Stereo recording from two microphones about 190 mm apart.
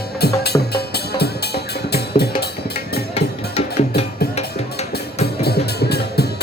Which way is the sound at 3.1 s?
30° left (ahead or behind).